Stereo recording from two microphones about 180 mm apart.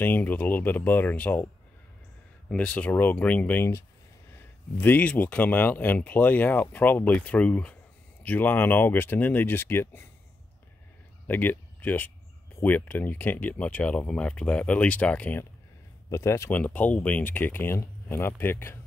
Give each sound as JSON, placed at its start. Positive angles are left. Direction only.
{"t": 0.0, "sound": "speech", "side_deg": 10}
{"t": 2.5, "sound": "speech", "side_deg": 5}
{"t": 11.2, "sound": "speech", "side_deg": 10}